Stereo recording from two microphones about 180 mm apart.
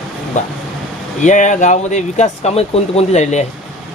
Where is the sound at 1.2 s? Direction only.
45° left (ahead or behind).